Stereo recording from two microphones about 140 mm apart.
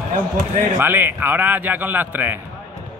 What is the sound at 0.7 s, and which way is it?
A man's voice, 15° right (ahead or behind).